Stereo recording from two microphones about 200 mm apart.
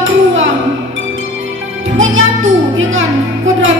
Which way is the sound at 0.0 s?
75° right (ahead or behind).